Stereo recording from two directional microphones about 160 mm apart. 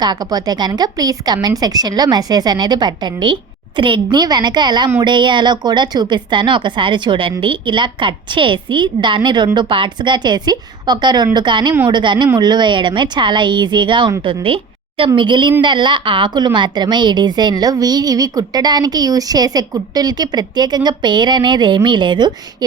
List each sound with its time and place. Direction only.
0.0 s a woman's voice: 25° right (ahead or behind)